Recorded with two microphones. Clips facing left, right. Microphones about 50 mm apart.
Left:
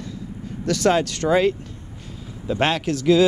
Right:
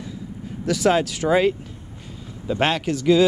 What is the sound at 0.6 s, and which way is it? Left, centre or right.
Speech, centre.